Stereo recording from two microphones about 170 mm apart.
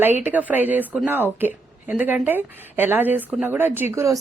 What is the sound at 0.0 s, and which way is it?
A woman's voice, 10° right (ahead or behind).